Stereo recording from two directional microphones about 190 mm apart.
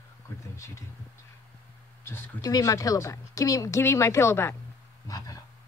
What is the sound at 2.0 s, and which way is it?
A woman's voice, 15° left (ahead or behind).